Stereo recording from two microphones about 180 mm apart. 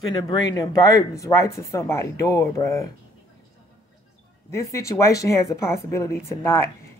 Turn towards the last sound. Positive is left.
turn(degrees=15)  # may be behind; listen again after turning